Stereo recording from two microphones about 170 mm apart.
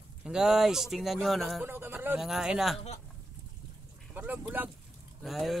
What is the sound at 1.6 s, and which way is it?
Speech, 10° right (ahead or behind).